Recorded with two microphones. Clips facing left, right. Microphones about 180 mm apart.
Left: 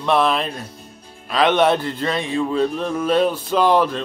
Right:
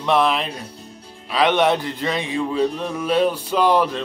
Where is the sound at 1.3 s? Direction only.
15° right (ahead or behind).